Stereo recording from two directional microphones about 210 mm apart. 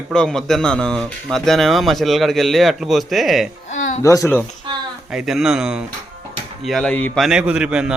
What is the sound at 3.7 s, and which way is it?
Music, 35° left (ahead or behind).